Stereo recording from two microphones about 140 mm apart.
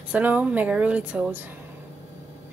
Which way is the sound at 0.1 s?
10° right (ahead or behind).